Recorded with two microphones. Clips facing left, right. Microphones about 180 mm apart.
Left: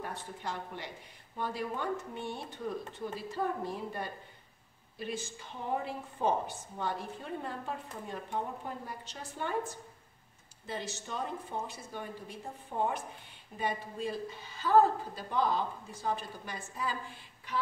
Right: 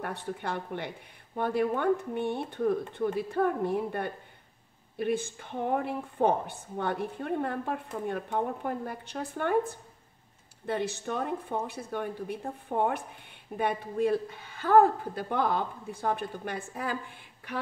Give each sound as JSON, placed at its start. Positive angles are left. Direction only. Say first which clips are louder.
{"t": 0.0, "sound": "speech", "louder": "right 5 dB", "side_deg": -60}